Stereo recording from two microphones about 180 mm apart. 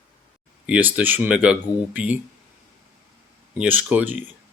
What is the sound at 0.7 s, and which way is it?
Speech, 10° right (ahead or behind).